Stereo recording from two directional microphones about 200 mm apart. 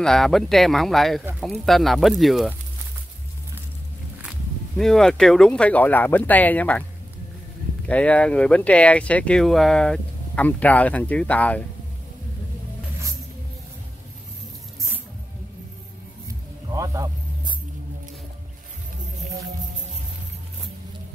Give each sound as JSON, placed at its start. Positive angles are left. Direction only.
{"t": 0.0, "sound": "speech", "side_deg": 0}
{"t": 4.2, "sound": "speech", "side_deg": 0}
{"t": 7.8, "sound": "speech", "side_deg": 5}
{"t": 16.3, "sound": "a sound", "side_deg": -15}